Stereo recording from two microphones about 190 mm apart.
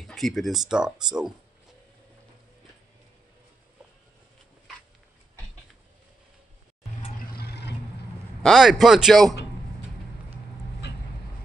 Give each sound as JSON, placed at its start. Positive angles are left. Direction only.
{"t": 0.0, "sound": "speech", "side_deg": 0}
{"t": 7.3, "sound": "vehicle", "side_deg": 60}
{"t": 8.4, "sound": "a man's voice", "side_deg": 0}